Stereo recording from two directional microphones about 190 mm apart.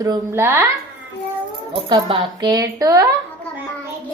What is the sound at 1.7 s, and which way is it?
A woman's voice, 25° right (ahead or behind).